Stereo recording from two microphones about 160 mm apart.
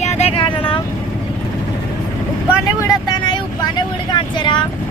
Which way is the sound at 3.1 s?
30° left (ahead or behind).